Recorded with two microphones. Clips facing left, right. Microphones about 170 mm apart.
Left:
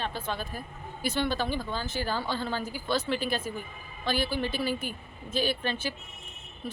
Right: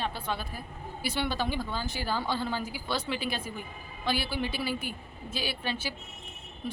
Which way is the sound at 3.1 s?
50° left (ahead or behind).